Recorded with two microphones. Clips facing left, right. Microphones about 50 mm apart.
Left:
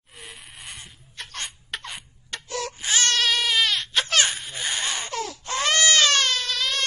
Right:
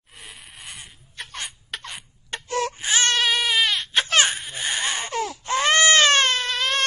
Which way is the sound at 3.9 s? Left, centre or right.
Right.